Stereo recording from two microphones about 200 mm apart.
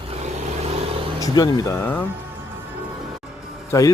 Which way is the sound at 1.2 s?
20° left (ahead or behind).